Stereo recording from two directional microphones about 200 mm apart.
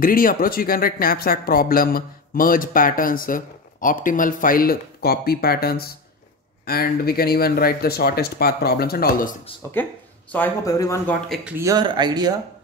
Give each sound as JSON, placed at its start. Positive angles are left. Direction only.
{"t": 0.0, "sound": "speech", "side_deg": 45}
{"t": 9.6, "sound": "speech", "side_deg": 15}
{"t": 11.2, "sound": "speech", "side_deg": 0}
{"t": 11.5, "sound": "speech", "side_deg": -15}